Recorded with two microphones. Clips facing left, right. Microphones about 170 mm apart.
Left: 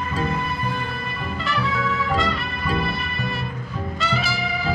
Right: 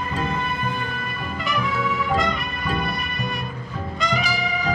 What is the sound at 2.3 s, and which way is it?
Music, centre (ahead or behind).